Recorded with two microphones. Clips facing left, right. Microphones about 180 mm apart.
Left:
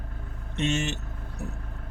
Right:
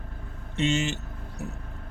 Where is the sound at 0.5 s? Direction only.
60° left (ahead or behind).